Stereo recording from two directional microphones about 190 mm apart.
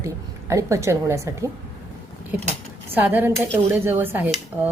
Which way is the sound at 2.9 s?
10° right (ahead or behind).